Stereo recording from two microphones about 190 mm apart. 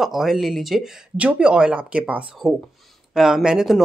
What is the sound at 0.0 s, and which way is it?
Speech, centre (ahead or behind).